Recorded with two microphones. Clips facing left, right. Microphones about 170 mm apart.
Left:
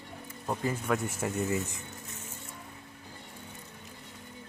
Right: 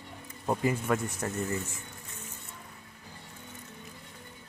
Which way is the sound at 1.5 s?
20° left (ahead or behind).